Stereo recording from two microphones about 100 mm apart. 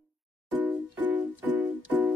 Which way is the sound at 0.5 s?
15° right (ahead or behind).